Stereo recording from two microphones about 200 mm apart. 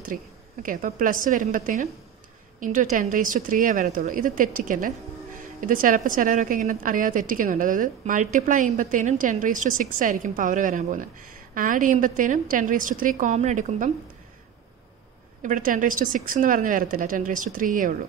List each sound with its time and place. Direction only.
0.0 s a woman's voice: 45° right (ahead or behind)
15.4 s speech: 40° right (ahead or behind)